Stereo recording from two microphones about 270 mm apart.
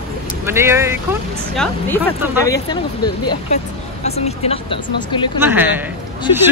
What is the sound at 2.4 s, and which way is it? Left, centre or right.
Speech, centre.